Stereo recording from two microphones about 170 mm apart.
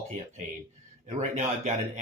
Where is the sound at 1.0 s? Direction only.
40° right (ahead or behind).